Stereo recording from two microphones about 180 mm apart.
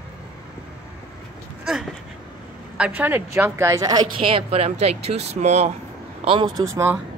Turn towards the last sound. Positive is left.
turn(degrees=-10)  # may be behind; listen again after turning